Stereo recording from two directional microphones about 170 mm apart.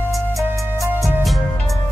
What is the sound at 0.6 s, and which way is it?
Music, 15° right (ahead or behind).